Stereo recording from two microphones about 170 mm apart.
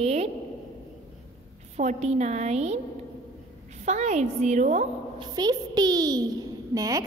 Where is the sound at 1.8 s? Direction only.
40° right (ahead or behind).